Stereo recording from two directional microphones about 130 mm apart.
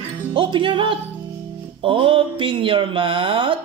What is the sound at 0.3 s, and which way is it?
Music, 40° right (ahead or behind).